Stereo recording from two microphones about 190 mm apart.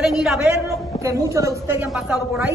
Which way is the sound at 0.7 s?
15° right (ahead or behind).